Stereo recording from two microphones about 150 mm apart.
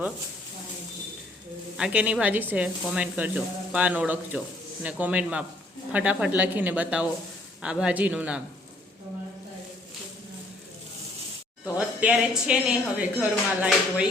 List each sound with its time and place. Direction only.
1.7 s speech: 5° right (ahead or behind)
11.9 s speech: 10° right (ahead or behind)
13.7 s music: 5° right (ahead or behind)